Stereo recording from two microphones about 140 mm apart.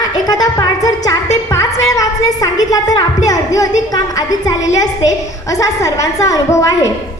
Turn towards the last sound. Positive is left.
turn(degrees=20)  # may be behind; listen again after turning